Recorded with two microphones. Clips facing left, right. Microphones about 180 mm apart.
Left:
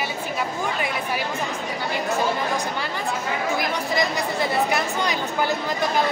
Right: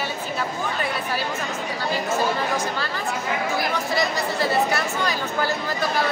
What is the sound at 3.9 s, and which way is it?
Speech, 15° left (ahead or behind).